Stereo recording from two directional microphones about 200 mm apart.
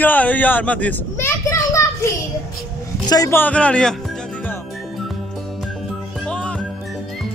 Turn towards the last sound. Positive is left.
turn(degrees=5)  # may be behind; listen again after turning